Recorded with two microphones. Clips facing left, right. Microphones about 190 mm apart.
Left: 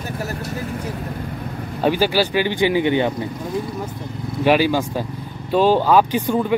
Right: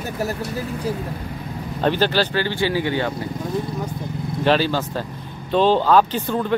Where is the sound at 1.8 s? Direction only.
10° left (ahead or behind).